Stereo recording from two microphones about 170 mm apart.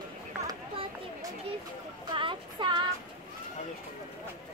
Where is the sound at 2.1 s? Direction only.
30° right (ahead or behind).